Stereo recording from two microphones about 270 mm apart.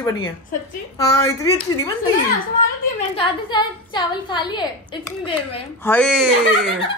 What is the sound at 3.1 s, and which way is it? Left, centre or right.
A woman's voice, centre.